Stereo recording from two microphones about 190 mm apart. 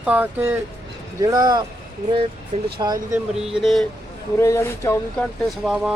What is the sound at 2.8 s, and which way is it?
Speech, 20° right (ahead or behind).